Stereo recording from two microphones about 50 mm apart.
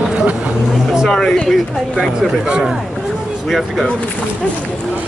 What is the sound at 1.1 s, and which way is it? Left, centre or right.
Speech, centre.